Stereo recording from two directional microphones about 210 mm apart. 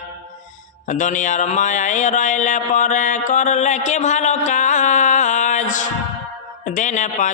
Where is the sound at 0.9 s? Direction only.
35° left (ahead or behind).